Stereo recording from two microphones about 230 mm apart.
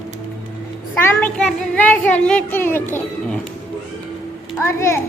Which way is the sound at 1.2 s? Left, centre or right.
Centre.